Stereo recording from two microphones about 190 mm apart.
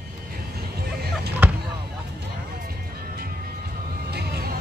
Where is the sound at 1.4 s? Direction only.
10° right (ahead or behind).